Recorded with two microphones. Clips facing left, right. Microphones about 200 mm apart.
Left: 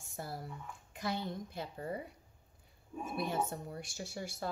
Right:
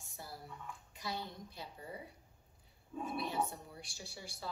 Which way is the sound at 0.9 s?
50° left (ahead or behind).